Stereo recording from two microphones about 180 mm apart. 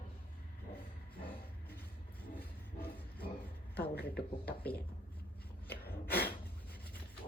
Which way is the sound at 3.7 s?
60° left (ahead or behind).